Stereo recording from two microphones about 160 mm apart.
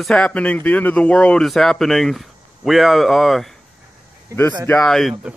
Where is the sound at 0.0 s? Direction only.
5° left (ahead or behind).